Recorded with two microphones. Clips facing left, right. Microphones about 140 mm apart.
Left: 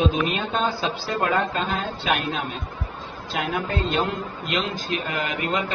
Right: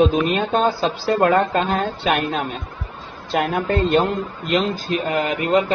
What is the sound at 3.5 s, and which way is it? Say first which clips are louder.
Speech: right 7 dB; 45° right (ahead or behind).